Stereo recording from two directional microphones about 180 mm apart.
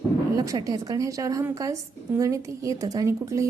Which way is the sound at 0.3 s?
20° right (ahead or behind).